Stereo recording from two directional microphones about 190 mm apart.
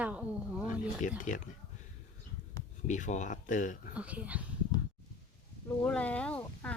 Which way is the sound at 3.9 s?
5° right (ahead or behind).